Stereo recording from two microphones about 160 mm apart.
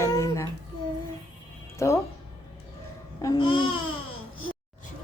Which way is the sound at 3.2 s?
25° left (ahead or behind).